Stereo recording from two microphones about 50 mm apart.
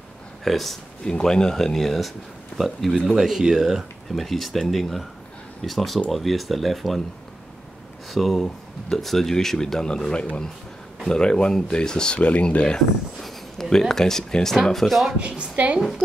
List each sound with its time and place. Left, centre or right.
0.4 s speech: centre
1.0 s speech: centre
3.1 s speech: centre
4.1 s speech: centre
8.1 s speech: centre
12.2 s speech: left
13.2 s speech: centre
15.1 s a woman's voice: right